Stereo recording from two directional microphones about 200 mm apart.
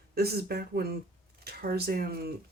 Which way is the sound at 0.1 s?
50° right (ahead or behind).